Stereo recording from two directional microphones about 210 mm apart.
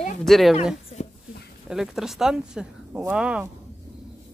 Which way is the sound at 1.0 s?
30° left (ahead or behind).